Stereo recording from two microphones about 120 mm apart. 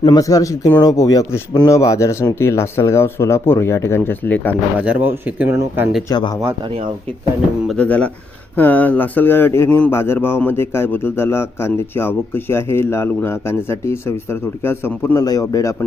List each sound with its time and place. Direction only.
0.0 s a man's voice: 35° left (ahead or behind); by 4.5 s 15° left (ahead or behind)
4.8 s speech: 15° right (ahead or behind)
6.1 s speech: 40° left (ahead or behind)
7.7 s a man's voice: 10° left (ahead or behind)
15.1 s speech: 30° left (ahead or behind)